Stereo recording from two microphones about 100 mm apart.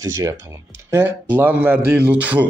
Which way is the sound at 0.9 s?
15° right (ahead or behind).